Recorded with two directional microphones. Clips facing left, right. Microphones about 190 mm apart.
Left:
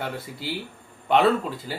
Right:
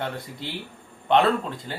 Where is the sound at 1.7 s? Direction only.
5° left (ahead or behind).